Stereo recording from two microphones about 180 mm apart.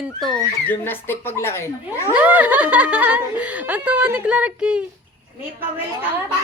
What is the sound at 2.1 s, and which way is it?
Speech, 10° right (ahead or behind).